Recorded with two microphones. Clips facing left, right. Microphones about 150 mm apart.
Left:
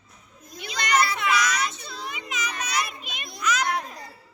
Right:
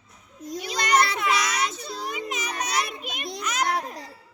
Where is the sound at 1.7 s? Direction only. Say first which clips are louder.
Right 4 dB; 40° right (ahead or behind).